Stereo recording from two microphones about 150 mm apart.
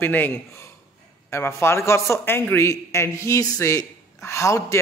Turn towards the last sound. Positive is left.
turn(degrees=20)  # may be behind; listen again after turning